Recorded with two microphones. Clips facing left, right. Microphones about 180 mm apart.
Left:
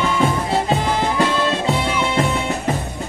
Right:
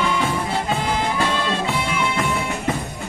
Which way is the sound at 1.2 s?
35° left (ahead or behind).